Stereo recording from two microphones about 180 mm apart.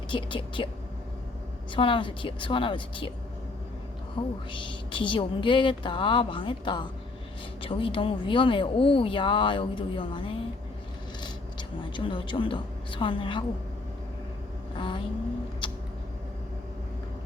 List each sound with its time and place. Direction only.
0.1 s speech: 30° left (ahead or behind)
1.7 s speech: 30° left (ahead or behind)
4.2 s speech: 30° left (ahead or behind)
11.9 s speech: 25° left (ahead or behind)
14.8 s vehicle: 30° left (ahead or behind)
15.6 s mouse: 25° left (ahead or behind)